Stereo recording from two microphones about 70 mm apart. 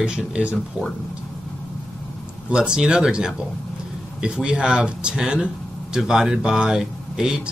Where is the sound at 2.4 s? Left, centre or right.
Centre.